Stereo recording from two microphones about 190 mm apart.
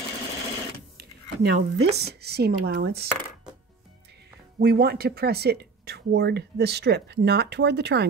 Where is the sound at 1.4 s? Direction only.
60° right (ahead or behind).